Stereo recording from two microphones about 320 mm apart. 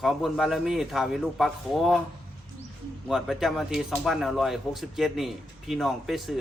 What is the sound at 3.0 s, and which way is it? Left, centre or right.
Speech, centre.